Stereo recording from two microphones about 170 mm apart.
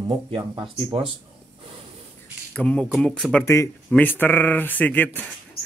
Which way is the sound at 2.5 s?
5° left (ahead or behind).